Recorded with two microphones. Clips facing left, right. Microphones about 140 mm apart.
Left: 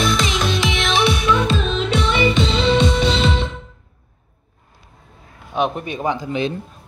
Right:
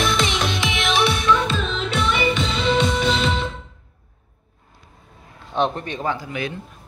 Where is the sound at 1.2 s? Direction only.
15° left (ahead or behind).